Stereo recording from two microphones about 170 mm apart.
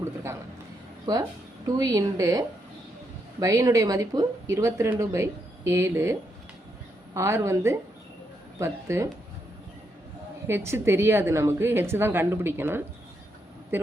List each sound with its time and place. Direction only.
1.6 s a woman's voice: 20° right (ahead or behind)
3.4 s speech: 20° right (ahead or behind)
10.4 s speech: 15° right (ahead or behind)